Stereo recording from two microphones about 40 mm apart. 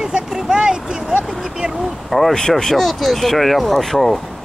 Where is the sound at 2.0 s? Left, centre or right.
Centre.